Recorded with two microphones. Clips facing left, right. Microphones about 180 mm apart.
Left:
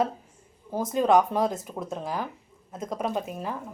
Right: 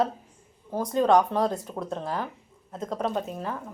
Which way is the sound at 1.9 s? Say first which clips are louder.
Even; 5° left (ahead or behind).